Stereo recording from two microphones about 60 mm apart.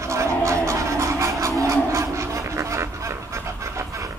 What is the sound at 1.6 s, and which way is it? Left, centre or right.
Goose, right.